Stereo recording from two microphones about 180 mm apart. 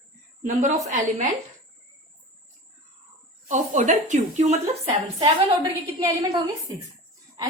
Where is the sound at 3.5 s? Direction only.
45° right (ahead or behind).